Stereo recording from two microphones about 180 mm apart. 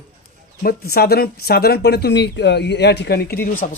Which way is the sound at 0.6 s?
60° left (ahead or behind).